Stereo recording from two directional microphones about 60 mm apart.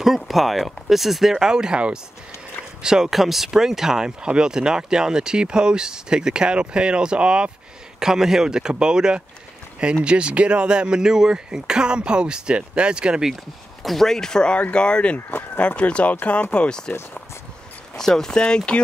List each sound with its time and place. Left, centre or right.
0.0 s speech: centre
13.8 s speech: centre
15.1 s speech: left
15.6 s speech: left
17.9 s speech: centre